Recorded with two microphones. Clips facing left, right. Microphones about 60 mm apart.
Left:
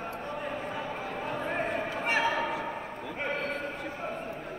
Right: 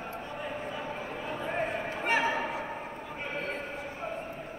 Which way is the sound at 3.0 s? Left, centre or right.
Left.